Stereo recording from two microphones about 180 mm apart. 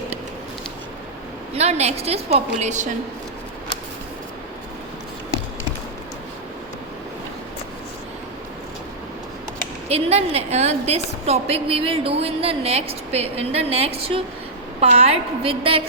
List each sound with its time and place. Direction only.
1.5 s a woman's voice: 35° right (ahead or behind)
9.9 s a woman's voice: 35° right (ahead or behind)